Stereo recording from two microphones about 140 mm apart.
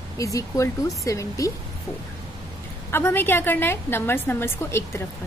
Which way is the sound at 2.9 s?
15° left (ahead or behind).